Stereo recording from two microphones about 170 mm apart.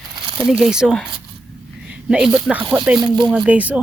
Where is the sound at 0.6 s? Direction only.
5° right (ahead or behind).